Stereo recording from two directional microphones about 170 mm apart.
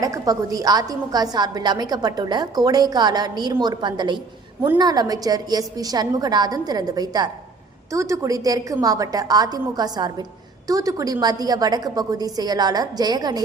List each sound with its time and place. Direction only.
0.0 s a woman's voice: 20° right (ahead or behind)